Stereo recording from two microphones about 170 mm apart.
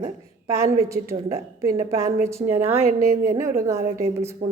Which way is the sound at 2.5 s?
10° right (ahead or behind).